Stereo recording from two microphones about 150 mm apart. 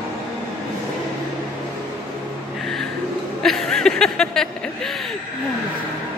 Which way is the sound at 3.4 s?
5° left (ahead or behind).